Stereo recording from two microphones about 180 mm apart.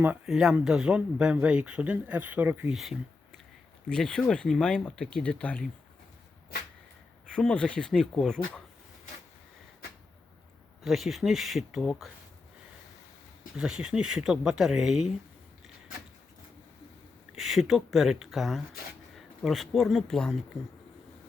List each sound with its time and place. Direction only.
0.0 s speech: 5° right (ahead or behind)
6.5 s a sound: 60° left (ahead or behind)
7.3 s speech: 5° left (ahead or behind)
10.8 s speech: centre (ahead or behind)
13.6 s speech: 5° right (ahead or behind)
17.3 s speech: centre (ahead or behind)